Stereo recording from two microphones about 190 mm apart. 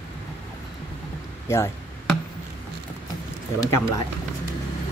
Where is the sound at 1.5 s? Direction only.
15° left (ahead or behind).